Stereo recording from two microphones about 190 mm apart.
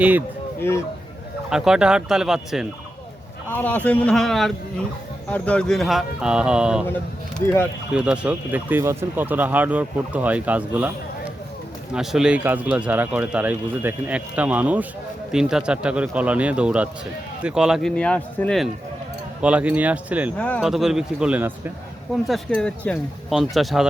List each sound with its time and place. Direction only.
1.5 s a man's voice: 5° right (ahead or behind)
3.5 s a man's voice: 10° left (ahead or behind)
7.4 s a man's voice: 10° left (ahead or behind)
7.9 s speech: 5° right (ahead or behind)
11.9 s a man's voice: 5° right (ahead or behind)
20.4 s a man's voice: 5° left (ahead or behind)
22.3 s a man's voice: 5° left (ahead or behind)